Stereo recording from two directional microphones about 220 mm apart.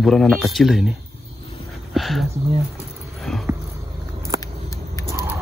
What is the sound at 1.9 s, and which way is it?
Speech, centre (ahead or behind).